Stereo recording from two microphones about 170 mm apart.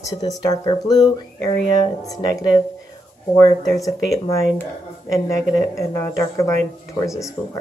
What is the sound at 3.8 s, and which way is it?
Speech, 20° left (ahead or behind).